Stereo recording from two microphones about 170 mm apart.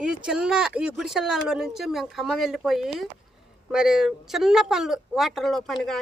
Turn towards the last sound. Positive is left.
turn(degrees=0)  # may be behind; listen again after turning